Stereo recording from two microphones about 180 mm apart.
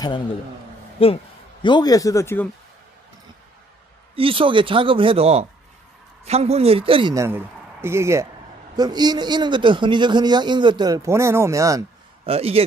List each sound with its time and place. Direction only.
0.9 s a man's voice: 30° left (ahead or behind); by 2.5 s 10° left (ahead or behind)
4.1 s a man's voice: 30° right (ahead or behind)
7.2 s a man's voice: 15° right (ahead or behind)
12.3 s a man's voice: 35° right (ahead or behind)